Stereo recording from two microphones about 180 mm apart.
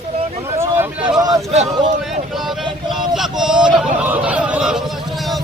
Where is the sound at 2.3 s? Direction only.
Centre (ahead or behind).